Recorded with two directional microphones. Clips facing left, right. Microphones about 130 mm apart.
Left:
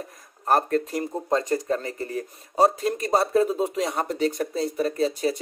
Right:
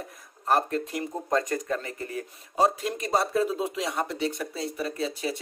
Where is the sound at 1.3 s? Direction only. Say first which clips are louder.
Left 3 dB; 30° left (ahead or behind).